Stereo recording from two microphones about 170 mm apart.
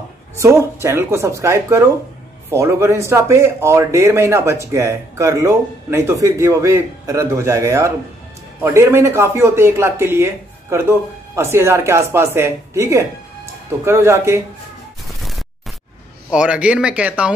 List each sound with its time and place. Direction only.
0.4 s speech: 15° right (ahead or behind)
16.3 s speech: 5° right (ahead or behind)